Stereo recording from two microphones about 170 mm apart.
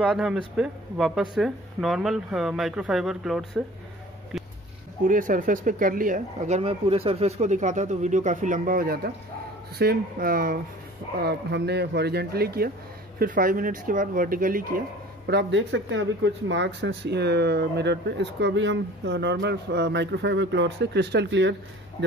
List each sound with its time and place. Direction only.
0.0 s speech: centre (ahead or behind)
5.0 s speech: 50° right (ahead or behind)
11.1 s speech: 75° right (ahead or behind); by 14.8 s 55° right (ahead or behind)
15.2 s speech: 85° right